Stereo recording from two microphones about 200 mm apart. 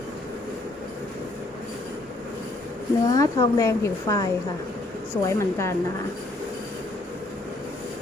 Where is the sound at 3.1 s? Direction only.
15° left (ahead or behind).